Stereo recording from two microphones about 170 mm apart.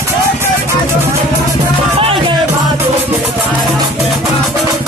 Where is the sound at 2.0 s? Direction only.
35° right (ahead or behind).